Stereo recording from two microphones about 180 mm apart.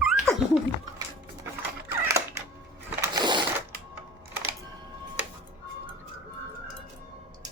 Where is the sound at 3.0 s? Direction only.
25° right (ahead or behind).